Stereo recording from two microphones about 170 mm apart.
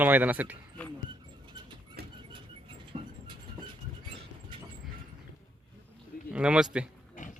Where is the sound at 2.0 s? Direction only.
70° right (ahead or behind).